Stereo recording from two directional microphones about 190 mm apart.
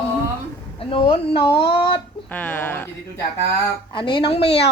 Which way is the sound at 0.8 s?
30° left (ahead or behind).